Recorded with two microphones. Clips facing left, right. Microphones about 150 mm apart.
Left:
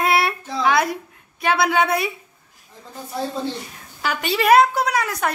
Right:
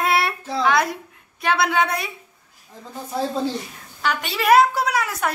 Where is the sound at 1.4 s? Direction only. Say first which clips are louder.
Left 1 dB; centre (ahead or behind).